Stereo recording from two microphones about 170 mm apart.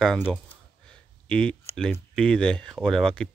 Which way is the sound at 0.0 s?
5° left (ahead or behind).